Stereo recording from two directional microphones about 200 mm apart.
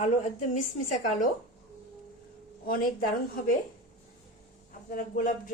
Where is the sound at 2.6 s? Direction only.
45° left (ahead or behind).